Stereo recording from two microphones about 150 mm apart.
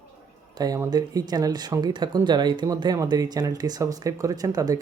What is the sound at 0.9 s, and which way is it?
Speech, 25° right (ahead or behind).